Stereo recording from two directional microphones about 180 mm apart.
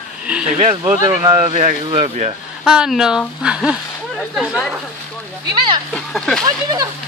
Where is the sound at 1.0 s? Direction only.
25° right (ahead or behind).